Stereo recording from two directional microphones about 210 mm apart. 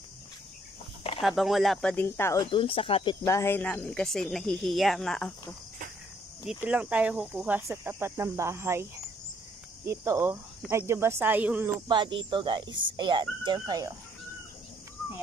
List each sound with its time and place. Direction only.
1.2 s speech: centre (ahead or behind)
2.5 s speech: 25° left (ahead or behind); by 5.3 s centre (ahead or behind)
6.4 s speech: 5° right (ahead or behind)
9.8 s speech: 15° right (ahead or behind)
11.9 s speech: 20° right (ahead or behind)